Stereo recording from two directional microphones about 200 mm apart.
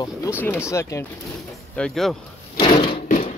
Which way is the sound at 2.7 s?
40° left (ahead or behind).